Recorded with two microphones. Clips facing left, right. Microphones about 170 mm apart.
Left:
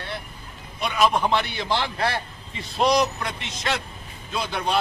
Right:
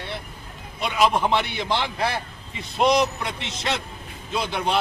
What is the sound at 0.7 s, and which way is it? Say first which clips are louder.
A man's voice: even; 25° right (ahead or behind).